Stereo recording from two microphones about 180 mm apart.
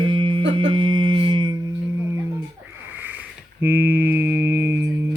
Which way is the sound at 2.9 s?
10° right (ahead or behind).